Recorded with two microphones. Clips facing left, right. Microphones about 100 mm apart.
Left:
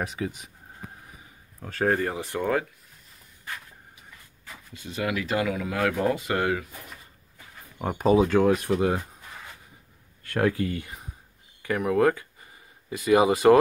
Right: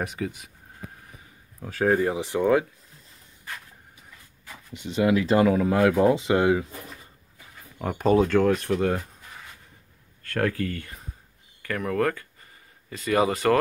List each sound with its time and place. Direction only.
0.0 s speech: centre (ahead or behind)
1.6 s speech: 5° right (ahead or behind)
4.7 s speech: 25° right (ahead or behind)
7.8 s speech: 10° left (ahead or behind)
10.2 s speech: 15° left (ahead or behind)